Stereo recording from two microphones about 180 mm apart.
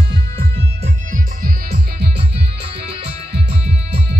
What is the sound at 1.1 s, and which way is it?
Music, 55° right (ahead or behind).